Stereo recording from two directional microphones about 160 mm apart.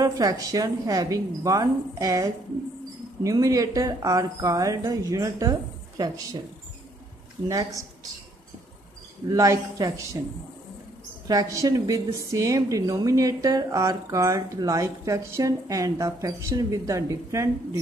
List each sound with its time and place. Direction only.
0.0 s a woman's voice: 20° right (ahead or behind)
7.4 s a woman's voice: 20° right (ahead or behind)
9.3 s a woman's voice: 20° right (ahead or behind)
11.2 s a woman's voice: 20° right (ahead or behind)